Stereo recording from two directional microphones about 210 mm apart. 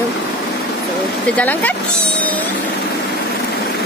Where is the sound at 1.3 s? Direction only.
5° left (ahead or behind).